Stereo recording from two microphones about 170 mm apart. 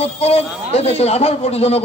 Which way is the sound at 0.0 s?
35° left (ahead or behind).